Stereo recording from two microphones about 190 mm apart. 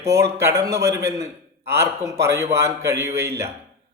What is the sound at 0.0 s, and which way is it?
A man's voice, 15° right (ahead or behind).